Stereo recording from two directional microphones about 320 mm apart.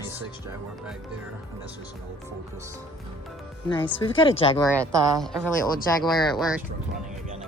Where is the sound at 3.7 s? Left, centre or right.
Centre.